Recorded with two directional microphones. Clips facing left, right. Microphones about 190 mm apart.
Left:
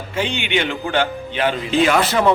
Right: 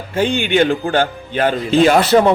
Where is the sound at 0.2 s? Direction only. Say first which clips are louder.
Right 7 dB; 45° right (ahead or behind).